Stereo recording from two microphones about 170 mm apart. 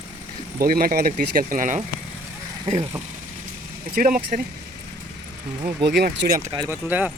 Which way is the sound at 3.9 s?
55° right (ahead or behind).